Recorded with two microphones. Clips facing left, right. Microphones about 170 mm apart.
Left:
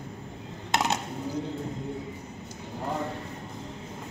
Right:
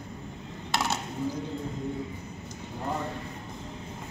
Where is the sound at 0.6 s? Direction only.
20° left (ahead or behind).